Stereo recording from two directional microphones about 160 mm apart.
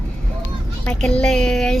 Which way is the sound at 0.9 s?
5° left (ahead or behind).